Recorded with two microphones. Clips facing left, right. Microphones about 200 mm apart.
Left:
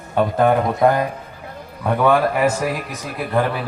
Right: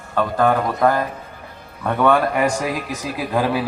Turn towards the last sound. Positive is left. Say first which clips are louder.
# even
turn(degrees=-5)  # may be behind; listen again after turning